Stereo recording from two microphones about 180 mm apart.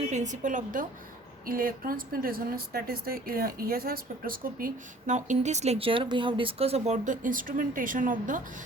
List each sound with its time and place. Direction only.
0.1 s speech: 40° right (ahead or behind)